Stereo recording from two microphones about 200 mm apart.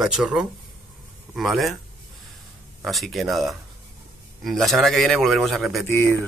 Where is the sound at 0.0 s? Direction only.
Centre (ahead or behind).